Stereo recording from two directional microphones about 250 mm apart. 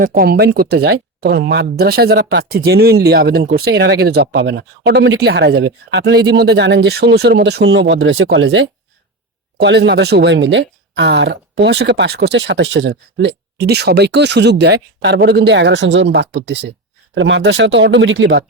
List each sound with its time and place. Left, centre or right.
0.0 s speech: right